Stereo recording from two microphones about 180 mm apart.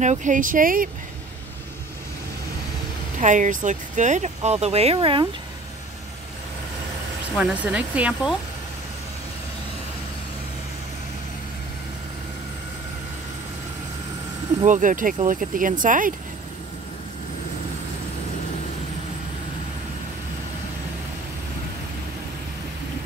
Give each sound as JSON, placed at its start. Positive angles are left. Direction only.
{"t": 0.0, "sound": "speech", "side_deg": -45}
{"t": 3.2, "sound": "speech", "side_deg": -45}
{"t": 7.3, "sound": "speech", "side_deg": -5}
{"t": 14.7, "sound": "speech", "side_deg": -45}